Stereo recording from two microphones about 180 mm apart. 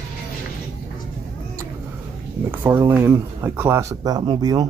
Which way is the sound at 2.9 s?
10° right (ahead or behind).